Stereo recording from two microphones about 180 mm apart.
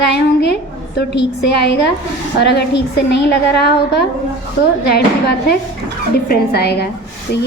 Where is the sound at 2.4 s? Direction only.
65° left (ahead or behind).